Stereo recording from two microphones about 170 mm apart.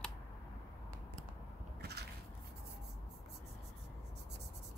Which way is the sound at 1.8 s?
75° right (ahead or behind).